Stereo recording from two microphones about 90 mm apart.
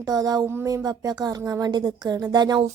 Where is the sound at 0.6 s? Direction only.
40° right (ahead or behind).